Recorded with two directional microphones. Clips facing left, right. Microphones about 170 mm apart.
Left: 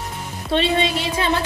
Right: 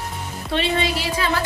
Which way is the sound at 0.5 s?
25° left (ahead or behind).